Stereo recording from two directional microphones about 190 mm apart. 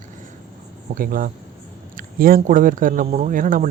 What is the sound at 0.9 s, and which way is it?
Speech, 50° right (ahead or behind).